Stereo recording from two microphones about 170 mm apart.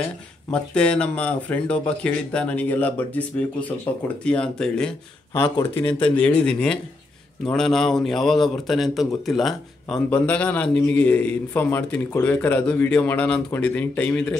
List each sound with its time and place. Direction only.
0.5 s a man's voice: 5° left (ahead or behind)
5.3 s a man's voice: 15° left (ahead or behind)